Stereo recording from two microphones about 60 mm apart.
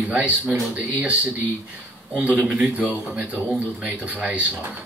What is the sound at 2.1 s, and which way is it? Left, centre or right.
Speech, right.